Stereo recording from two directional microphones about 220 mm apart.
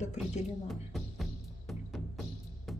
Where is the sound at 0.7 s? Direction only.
Centre (ahead or behind).